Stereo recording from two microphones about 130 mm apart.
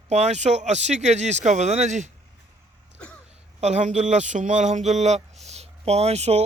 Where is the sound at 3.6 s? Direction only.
60° right (ahead or behind).